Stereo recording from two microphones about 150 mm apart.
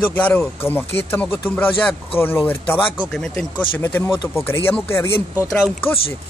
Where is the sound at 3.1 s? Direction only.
5° left (ahead or behind).